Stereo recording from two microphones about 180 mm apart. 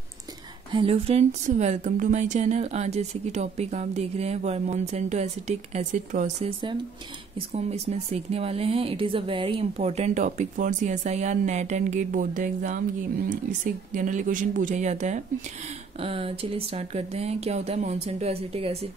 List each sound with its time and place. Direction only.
0.7 s speech: 30° right (ahead or behind)